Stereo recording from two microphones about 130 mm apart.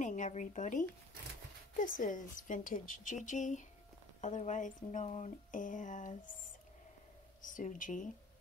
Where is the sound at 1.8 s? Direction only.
90° left.